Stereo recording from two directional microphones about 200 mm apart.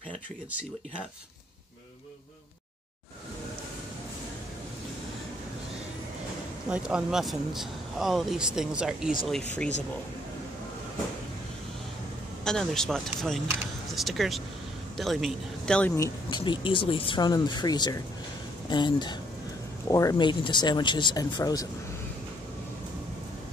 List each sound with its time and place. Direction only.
0.5 s speech: 5° right (ahead or behind)
6.7 s speech: 5° right (ahead or behind)
12.4 s speech: 5° left (ahead or behind)
16.3 s speech: 25° left (ahead or behind)